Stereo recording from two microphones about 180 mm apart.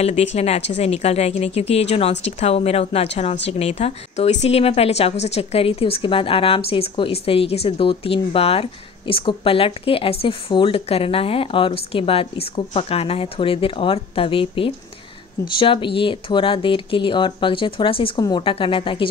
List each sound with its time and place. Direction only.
0.0 s speech: 35° left (ahead or behind)